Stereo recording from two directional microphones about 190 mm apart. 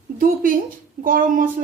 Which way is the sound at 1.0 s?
45° right (ahead or behind).